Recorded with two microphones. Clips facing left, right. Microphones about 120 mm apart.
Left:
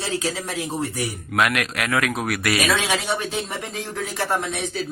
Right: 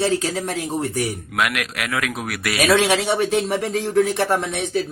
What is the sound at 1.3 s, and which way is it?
Speech, 5° right (ahead or behind).